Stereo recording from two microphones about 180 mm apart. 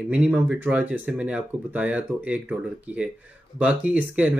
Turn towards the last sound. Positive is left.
turn(degrees=-5)  # may be behind; listen again after turning